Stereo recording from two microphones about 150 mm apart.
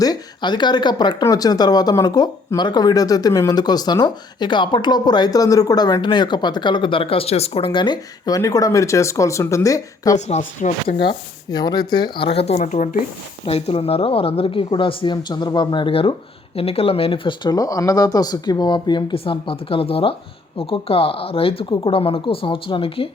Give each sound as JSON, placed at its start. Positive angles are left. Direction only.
{"t": 0.0, "sound": "speech", "side_deg": 25}
{"t": 10.2, "sound": "speech", "side_deg": 50}
{"t": 11.0, "sound": "speech", "side_deg": 30}
{"t": 13.4, "sound": "speech", "side_deg": 40}